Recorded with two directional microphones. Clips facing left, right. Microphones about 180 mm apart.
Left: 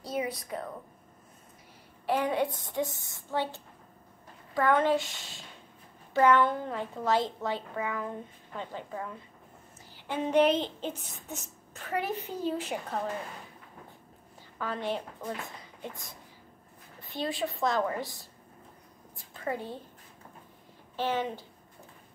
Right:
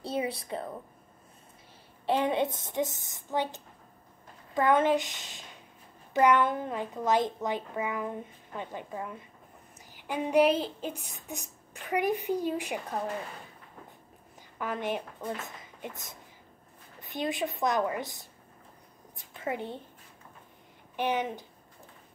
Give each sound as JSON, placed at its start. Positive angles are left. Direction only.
{"t": 0.0, "sound": "a woman's voice", "side_deg": -30}
{"t": 2.0, "sound": "a woman's voice", "side_deg": -25}
{"t": 14.6, "sound": "a child's voice", "side_deg": -20}
{"t": 19.1, "sound": "a sound", "side_deg": -20}
{"t": 20.9, "sound": "a child's voice", "side_deg": -15}